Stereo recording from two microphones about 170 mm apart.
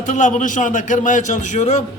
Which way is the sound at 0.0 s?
45° left (ahead or behind).